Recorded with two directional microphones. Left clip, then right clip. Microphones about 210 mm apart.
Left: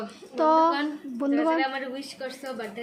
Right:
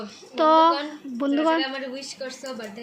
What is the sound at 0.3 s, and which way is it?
Speech, 5° right (ahead or behind).